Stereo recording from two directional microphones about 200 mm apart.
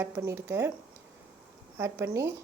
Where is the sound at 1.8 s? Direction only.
15° right (ahead or behind).